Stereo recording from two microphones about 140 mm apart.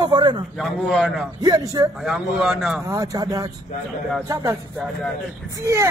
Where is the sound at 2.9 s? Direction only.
25° right (ahead or behind).